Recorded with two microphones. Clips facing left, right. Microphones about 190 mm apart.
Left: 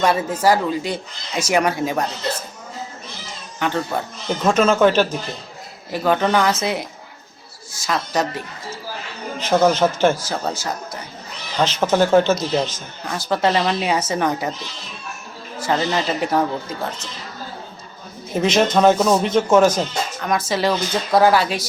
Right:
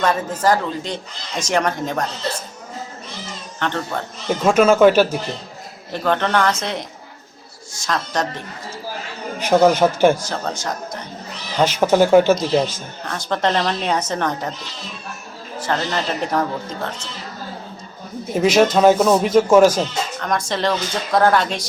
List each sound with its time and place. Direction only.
0.0 s speech: 10° left (ahead or behind)
3.6 s speech: 10° left (ahead or behind)
4.3 s a man's voice: 10° right (ahead or behind)
5.9 s speech: 5° left (ahead or behind)
9.4 s a man's voice: 10° right (ahead or behind)
10.2 s speech: 5° left (ahead or behind)
11.5 s a man's voice: 10° right (ahead or behind)
13.1 s speech: 5° left (ahead or behind)
15.6 s speech: 10° left (ahead or behind)
18.3 s a man's voice: 10° right (ahead or behind)
20.1 s speech: 5° left (ahead or behind)